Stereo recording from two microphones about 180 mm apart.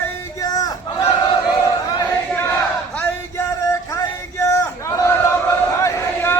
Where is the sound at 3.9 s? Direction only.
15° left (ahead or behind).